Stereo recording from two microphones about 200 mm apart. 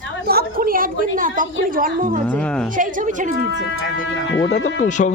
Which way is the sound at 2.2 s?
5° left (ahead or behind).